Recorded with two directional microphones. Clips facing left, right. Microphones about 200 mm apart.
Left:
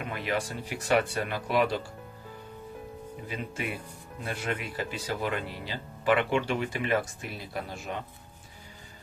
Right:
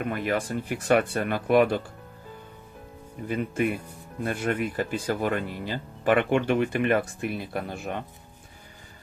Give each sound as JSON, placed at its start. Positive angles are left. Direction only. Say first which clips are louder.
{"t": 0.0, "sound": "speech", "louder": "right 4 dB", "side_deg": -50}
{"t": 3.2, "sound": "speech", "louder": "right 10 dB", "side_deg": -55}